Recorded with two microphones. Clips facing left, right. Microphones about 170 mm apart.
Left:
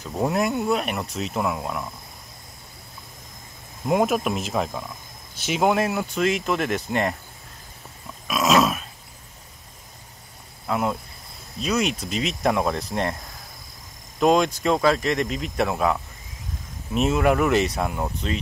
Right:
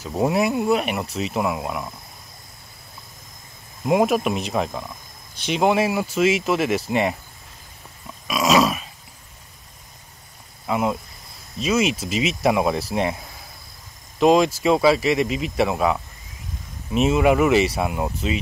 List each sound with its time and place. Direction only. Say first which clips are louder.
0.0 s speech: right 3 dB; 5° right (ahead or behind)
3.8 s speech: right 2 dB; centre (ahead or behind)
8.3 s a sound: right 1 dB; centre (ahead or behind)
10.7 s speech: right 2 dB; 5° right (ahead or behind)